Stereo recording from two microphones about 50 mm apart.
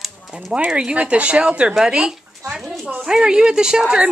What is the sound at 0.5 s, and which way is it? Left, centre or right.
Speech, right.